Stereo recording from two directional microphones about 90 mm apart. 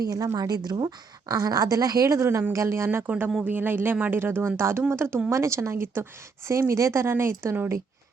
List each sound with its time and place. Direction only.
0.0 s a woman's voice: 40° right (ahead or behind); by 7.7 s 25° right (ahead or behind)